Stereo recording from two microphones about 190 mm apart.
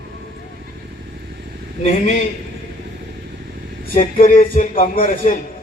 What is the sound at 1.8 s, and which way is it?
Speech, 35° left (ahead or behind).